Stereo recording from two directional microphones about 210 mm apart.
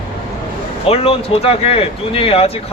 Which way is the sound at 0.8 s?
30° left (ahead or behind).